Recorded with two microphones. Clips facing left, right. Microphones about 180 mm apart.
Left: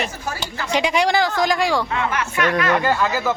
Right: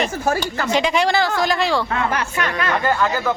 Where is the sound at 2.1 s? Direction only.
30° right (ahead or behind).